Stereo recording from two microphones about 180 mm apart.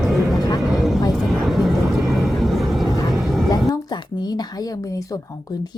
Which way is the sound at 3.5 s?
20° left (ahead or behind).